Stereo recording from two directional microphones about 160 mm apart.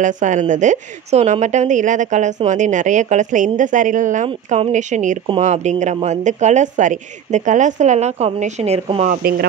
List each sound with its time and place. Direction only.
0.0 s a woman's voice: 50° right (ahead or behind)
9.1 s speech: 75° right (ahead or behind)